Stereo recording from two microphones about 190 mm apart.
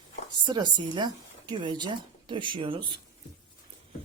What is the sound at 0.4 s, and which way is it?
Speech, 25° right (ahead or behind).